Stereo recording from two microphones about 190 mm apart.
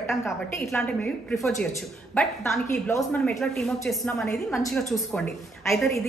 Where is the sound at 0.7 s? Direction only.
5° left (ahead or behind).